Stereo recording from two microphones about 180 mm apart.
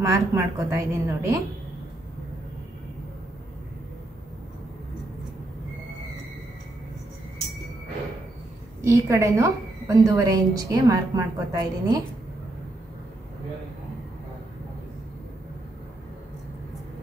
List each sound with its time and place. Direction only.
0.0 s a woman's voice: 15° right (ahead or behind)
8.8 s a woman's voice: 15° right (ahead or behind)